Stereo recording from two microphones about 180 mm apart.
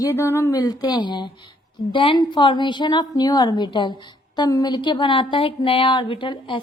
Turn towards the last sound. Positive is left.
turn(degrees=25)  # may be behind; listen again after turning